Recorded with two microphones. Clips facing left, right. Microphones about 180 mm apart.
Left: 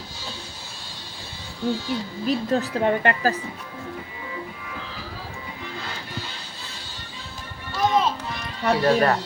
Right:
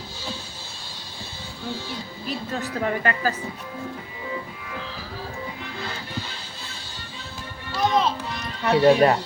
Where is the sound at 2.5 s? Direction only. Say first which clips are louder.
Left 3 dB; 35° left (ahead or behind).